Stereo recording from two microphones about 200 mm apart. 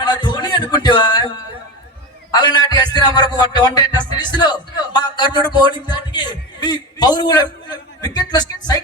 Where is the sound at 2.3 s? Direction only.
20° left (ahead or behind).